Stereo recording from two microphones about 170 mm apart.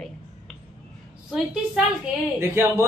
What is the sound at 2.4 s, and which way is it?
Speech, 15° right (ahead or behind).